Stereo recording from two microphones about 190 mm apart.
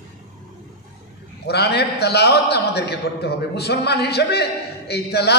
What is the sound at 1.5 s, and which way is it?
A man's voice, 60° left (ahead or behind).